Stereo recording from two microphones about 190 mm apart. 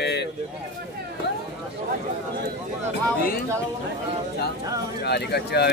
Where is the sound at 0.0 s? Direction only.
60° left (ahead or behind).